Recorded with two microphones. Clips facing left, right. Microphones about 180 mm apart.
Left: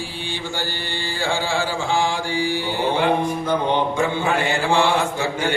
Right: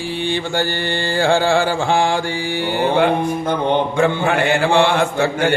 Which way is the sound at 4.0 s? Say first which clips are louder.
Right 4 dB; 60° right (ahead or behind).